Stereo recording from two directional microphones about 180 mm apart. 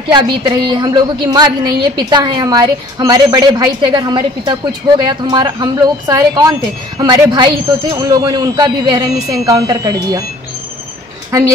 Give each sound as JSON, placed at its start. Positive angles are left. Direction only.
{"t": 0.1, "sound": "a woman's voice", "side_deg": -25}